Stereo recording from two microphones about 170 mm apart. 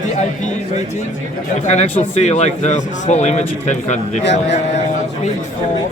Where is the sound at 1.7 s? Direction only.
40° left (ahead or behind).